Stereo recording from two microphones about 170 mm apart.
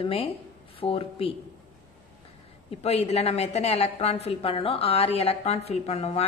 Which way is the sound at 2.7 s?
35° left (ahead or behind).